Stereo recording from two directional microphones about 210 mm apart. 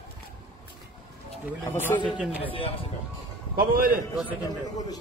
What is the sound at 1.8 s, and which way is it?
Speech, 5° right (ahead or behind).